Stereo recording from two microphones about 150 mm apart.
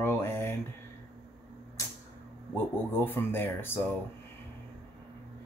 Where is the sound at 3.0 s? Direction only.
15° left (ahead or behind).